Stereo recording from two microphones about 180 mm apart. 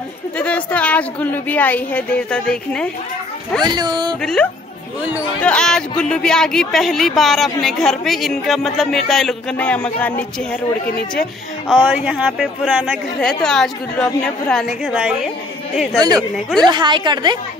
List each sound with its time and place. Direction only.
0.4 s a woman's voice: 10° left (ahead or behind)
3.6 s a woman's voice: 25° right (ahead or behind)
4.2 s speech: 5° left (ahead or behind)
11.1 s speech: 5° right (ahead or behind)
16.6 s a woman's voice: 25° right (ahead or behind)